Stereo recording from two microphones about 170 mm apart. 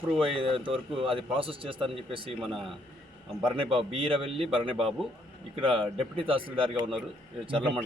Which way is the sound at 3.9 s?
30° right (ahead or behind).